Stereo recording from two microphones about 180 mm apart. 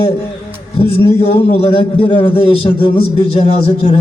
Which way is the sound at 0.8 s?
30° left (ahead or behind).